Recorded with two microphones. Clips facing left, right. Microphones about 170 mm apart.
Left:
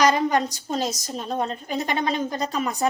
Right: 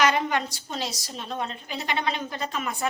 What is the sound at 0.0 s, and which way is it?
A woman's voice, 40° left (ahead or behind).